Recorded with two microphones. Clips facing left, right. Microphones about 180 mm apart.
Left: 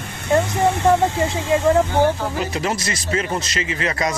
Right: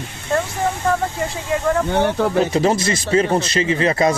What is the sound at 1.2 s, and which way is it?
Speech, 90° left.